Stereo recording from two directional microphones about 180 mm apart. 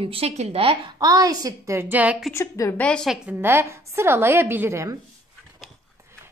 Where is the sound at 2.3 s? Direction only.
15° left (ahead or behind).